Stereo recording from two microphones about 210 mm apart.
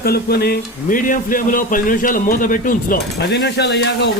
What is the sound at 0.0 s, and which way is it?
Speech, 45° left (ahead or behind).